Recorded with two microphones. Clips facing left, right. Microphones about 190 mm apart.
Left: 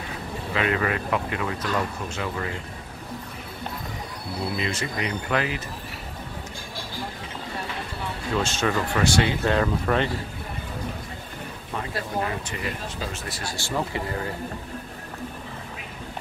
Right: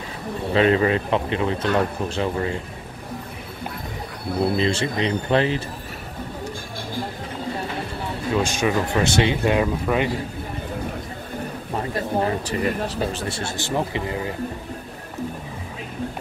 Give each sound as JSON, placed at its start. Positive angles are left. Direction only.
{"t": 0.5, "sound": "speech", "side_deg": -30}
{"t": 4.6, "sound": "speech", "side_deg": -30}
{"t": 8.4, "sound": "speech", "side_deg": -15}
{"t": 12.2, "sound": "speech", "side_deg": -35}